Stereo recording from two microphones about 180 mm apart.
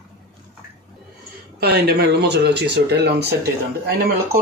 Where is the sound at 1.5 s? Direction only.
60° right (ahead or behind).